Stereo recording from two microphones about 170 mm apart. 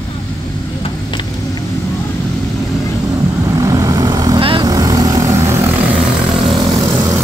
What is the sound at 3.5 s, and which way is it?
Vehicle, 20° right (ahead or behind).